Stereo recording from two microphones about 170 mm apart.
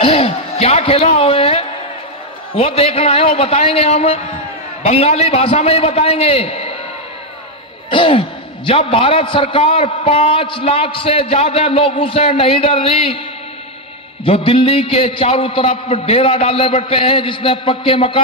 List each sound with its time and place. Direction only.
0.0 s a sound: 35° left (ahead or behind)
2.5 s a man's voice: 35° left (ahead or behind)
7.9 s a man's voice: 30° left (ahead or behind)
14.2 s a man's voice: 35° left (ahead or behind)